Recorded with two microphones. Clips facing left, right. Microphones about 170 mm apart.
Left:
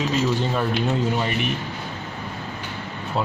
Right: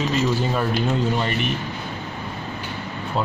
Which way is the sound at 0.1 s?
Centre (ahead or behind).